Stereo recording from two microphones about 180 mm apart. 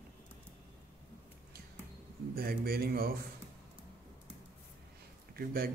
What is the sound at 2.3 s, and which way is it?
Speech, 55° right (ahead or behind).